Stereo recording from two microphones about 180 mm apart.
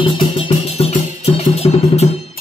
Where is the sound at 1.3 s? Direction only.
35° left (ahead or behind).